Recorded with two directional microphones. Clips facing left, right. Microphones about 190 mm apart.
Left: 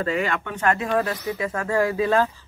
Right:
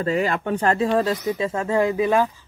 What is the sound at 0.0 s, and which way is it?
Speech, 35° right (ahead or behind).